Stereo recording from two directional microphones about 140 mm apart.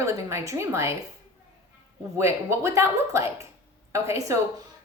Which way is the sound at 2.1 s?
20° right (ahead or behind).